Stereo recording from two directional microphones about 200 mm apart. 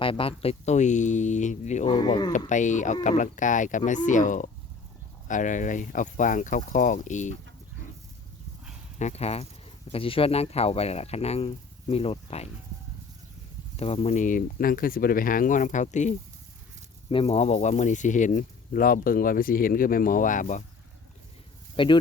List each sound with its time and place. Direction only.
0.0 s speech: 25° left (ahead or behind)
1.9 s speech: 20° left (ahead or behind)
2.5 s speech: 40° left (ahead or behind)
9.0 s speech: 35° left (ahead or behind)
13.7 s speech: 30° left (ahead or behind)
21.8 s speech: 25° left (ahead or behind)